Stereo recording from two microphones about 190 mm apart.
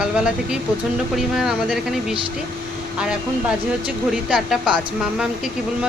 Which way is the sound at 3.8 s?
5° right (ahead or behind).